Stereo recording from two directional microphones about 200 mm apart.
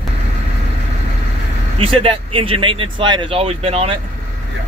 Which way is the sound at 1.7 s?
30° right (ahead or behind).